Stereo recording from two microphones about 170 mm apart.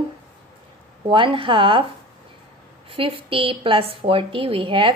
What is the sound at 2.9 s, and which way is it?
A woman's voice, 30° right (ahead or behind).